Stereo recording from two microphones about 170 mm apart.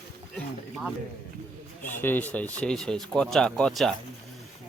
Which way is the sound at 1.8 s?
10° left (ahead or behind).